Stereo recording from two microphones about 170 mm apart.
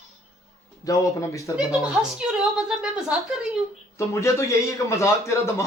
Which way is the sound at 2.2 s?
5° right (ahead or behind).